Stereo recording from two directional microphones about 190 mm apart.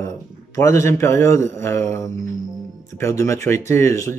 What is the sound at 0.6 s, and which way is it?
Speech, 15° left (ahead or behind).